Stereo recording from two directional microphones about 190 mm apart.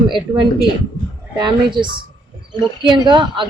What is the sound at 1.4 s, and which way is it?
Speech, 25° right (ahead or behind).